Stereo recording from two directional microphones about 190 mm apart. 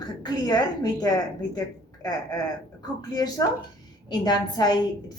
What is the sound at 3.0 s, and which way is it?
A woman's voice, 20° left (ahead or behind).